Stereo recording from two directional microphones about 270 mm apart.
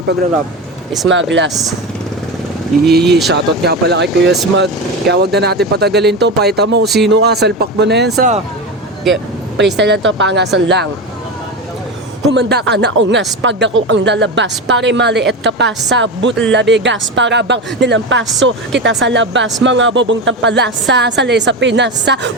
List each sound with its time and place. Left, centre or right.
1.0 s speech: right
2.8 s a woman's voice: right
6.8 s speech: centre
7.1 s a woman's voice: right
9.6 s a woman's voice: right
12.3 s a woman's voice: right